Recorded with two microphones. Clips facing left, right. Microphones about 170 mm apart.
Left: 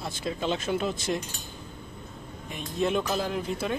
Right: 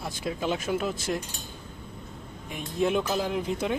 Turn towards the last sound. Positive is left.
turn(degrees=-15)  # may be behind; listen again after turning